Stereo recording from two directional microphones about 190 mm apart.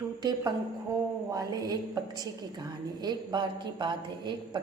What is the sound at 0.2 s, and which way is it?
Speech, 20° right (ahead or behind).